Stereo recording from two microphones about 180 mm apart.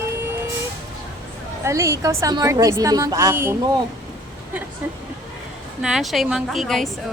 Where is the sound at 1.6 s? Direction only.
15° right (ahead or behind).